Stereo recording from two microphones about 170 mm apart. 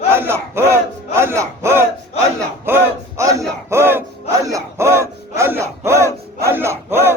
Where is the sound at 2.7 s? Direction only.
10° right (ahead or behind).